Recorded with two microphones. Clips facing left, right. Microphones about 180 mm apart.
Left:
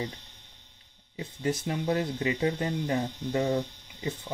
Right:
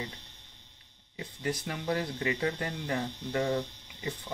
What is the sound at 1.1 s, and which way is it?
Speech, 25° left (ahead or behind).